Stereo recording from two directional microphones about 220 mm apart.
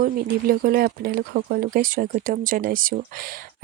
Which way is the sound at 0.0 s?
40° right (ahead or behind).